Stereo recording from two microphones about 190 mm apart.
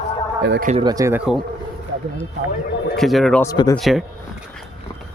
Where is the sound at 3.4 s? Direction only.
20° left (ahead or behind).